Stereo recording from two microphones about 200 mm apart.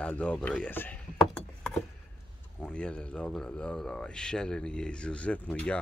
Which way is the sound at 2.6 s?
5° left (ahead or behind).